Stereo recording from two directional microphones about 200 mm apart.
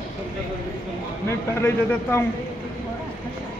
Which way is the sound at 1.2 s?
10° left (ahead or behind).